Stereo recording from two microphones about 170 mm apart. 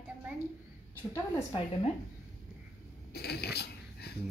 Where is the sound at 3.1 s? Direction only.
70° left (ahead or behind).